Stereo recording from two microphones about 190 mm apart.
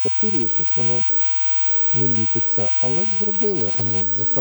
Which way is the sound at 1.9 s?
45° left (ahead or behind).